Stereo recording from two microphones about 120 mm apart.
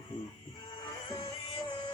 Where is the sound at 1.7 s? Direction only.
40° left (ahead or behind).